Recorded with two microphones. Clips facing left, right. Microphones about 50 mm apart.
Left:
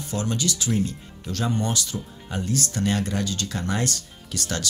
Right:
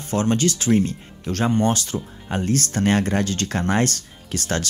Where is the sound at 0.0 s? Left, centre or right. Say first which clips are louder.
Right 7 dB; right.